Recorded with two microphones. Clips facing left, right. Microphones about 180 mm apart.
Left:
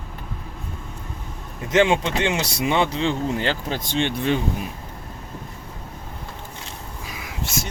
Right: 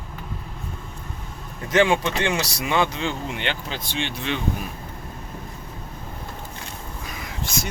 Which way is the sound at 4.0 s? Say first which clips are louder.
Left 6 dB; 50° left (ahead or behind).